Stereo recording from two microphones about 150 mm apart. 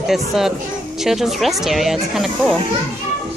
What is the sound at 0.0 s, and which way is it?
Speech, centre (ahead or behind).